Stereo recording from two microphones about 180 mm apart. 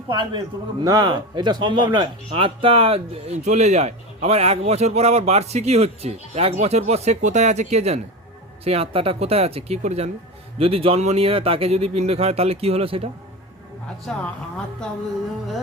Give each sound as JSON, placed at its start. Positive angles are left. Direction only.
{"t": 0.1, "sound": "speech", "side_deg": -25}
{"t": 14.1, "sound": "a woman's voice", "side_deg": 5}